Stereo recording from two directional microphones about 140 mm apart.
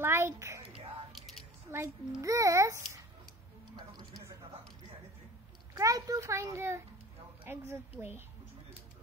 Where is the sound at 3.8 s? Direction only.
30° right (ahead or behind).